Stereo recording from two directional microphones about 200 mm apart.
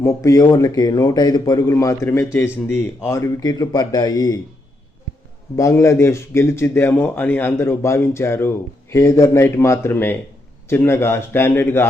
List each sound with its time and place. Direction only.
0.0 s a man's voice: 15° left (ahead or behind)
5.5 s a man's voice: 15° left (ahead or behind)